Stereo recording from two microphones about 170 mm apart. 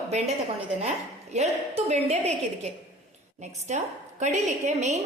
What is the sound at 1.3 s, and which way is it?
A woman's voice, 40° right (ahead or behind).